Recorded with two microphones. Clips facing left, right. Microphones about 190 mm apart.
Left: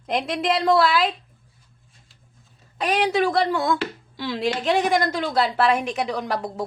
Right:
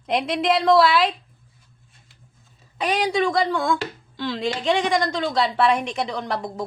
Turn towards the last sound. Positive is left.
turn(degrees=5)  # may be behind; listen again after turning